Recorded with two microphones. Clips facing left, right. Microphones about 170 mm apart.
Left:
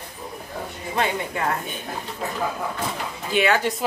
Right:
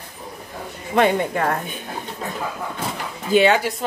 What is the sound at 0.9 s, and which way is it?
Speech, 55° right (ahead or behind).